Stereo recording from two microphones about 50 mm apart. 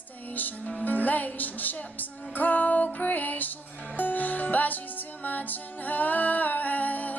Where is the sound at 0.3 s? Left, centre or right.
Left.